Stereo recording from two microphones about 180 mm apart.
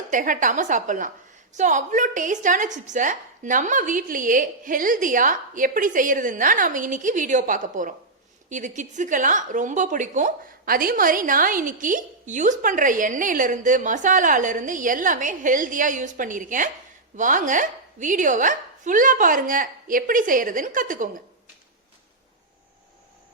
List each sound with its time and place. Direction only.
0.1 s a woman's voice: 45° right (ahead or behind)